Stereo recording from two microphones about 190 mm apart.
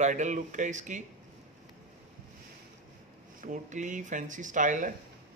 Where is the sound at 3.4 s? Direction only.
40° right (ahead or behind).